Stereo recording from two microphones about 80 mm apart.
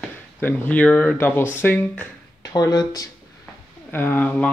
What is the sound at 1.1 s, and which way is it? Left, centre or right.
Speech, left.